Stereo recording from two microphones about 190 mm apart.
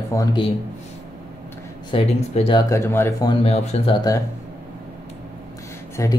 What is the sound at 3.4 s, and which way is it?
Speech, 35° left (ahead or behind).